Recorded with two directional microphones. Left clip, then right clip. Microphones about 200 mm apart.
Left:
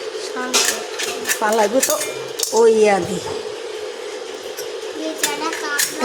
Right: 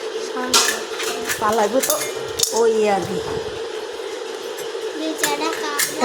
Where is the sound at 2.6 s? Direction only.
20° left (ahead or behind).